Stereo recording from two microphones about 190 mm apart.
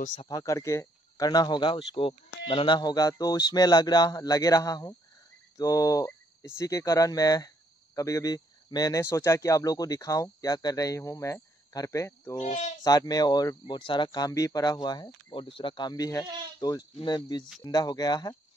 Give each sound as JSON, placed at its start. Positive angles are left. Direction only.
{"t": 0.3, "sound": "speech", "side_deg": 15}
{"t": 12.4, "sound": "speech", "side_deg": 40}
{"t": 12.8, "sound": "speech", "side_deg": 20}